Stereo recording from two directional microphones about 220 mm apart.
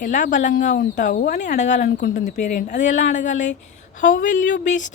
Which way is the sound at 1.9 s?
50° left (ahead or behind).